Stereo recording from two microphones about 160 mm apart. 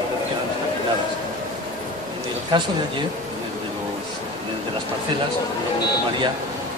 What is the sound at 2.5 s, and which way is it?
Speech, 30° right (ahead or behind).